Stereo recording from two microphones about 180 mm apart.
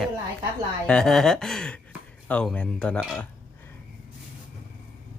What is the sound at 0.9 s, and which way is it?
Speech, 5° left (ahead or behind).